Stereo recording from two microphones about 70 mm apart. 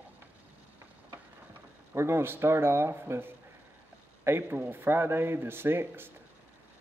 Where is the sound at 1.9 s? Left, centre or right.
Right.